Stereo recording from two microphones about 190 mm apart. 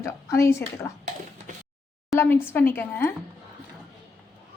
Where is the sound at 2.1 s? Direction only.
10° left (ahead or behind).